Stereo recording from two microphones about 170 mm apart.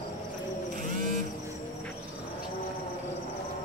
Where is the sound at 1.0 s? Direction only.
50° right (ahead or behind).